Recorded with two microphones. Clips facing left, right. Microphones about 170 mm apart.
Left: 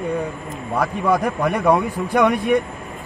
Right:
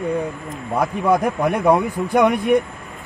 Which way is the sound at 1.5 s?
Centre (ahead or behind).